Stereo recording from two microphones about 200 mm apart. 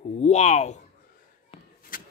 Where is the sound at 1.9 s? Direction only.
45° left (ahead or behind).